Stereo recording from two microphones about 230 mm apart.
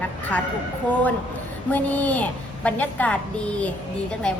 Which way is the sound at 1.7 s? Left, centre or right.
Centre.